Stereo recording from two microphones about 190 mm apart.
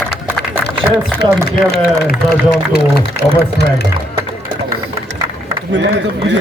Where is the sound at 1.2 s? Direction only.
55° left (ahead or behind).